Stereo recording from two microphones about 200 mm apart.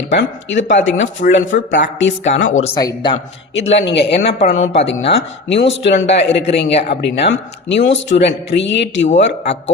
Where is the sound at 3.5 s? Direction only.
65° left (ahead or behind).